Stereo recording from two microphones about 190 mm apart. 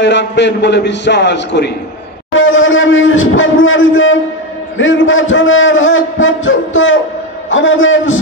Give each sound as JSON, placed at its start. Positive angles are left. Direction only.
{"t": 0.0, "sound": "a man's voice", "side_deg": 65}
{"t": 2.3, "sound": "a man's voice", "side_deg": 90}